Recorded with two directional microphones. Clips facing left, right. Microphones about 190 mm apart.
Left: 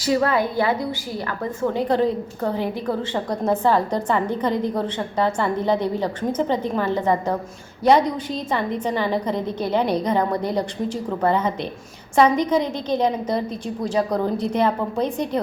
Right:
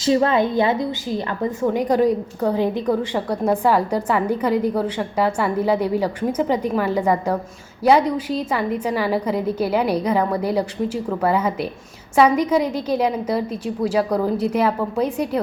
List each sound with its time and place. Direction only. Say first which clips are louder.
0.0 s a woman's voice: right 3 dB; 25° right (ahead or behind); by 15.4 s 5° right (ahead or behind)